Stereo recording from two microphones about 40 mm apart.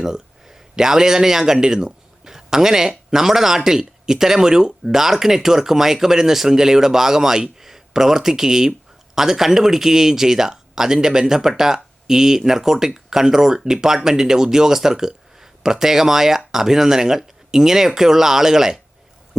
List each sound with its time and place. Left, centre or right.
0.0 s speech: centre